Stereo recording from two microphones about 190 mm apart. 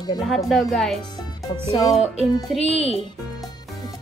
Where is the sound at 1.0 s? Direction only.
20° left (ahead or behind).